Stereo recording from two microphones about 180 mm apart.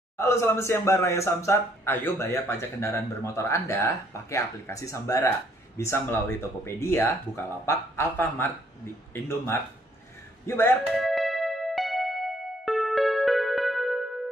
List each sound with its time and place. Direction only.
0.2 s speech: 15° left (ahead or behind)
10.9 s music: centre (ahead or behind)